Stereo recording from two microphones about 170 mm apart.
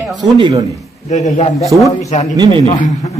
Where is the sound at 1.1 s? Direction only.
45° left (ahead or behind).